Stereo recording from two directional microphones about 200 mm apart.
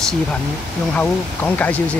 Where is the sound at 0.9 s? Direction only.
5° left (ahead or behind).